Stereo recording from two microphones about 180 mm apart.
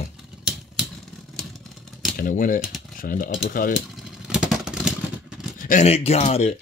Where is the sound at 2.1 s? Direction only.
50° left (ahead or behind).